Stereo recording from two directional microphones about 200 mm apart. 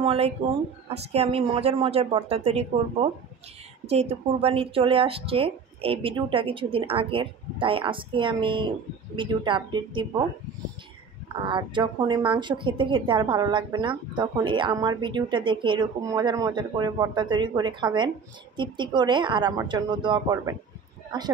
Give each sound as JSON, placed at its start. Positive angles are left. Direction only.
{"t": 0.0, "sound": "a woman's voice", "side_deg": -30}
{"t": 11.3, "sound": "a woman's voice", "side_deg": -25}